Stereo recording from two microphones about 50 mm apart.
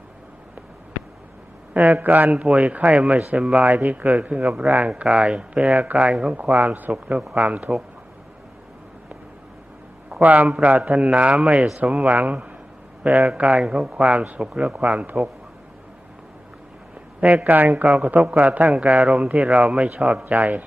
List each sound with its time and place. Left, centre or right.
1.7 s a man's voice: right
2.3 s a man's voice: right
4.9 s speech: centre; by 6.9 s right
6.9 s speech: right
10.2 s a man's voice: right
17.2 s a man's voice: right
17.4 s a man's voice: right